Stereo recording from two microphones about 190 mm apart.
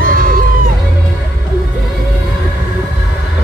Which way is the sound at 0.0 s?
50° right (ahead or behind).